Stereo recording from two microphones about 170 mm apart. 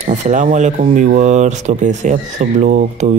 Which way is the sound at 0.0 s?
45° right (ahead or behind).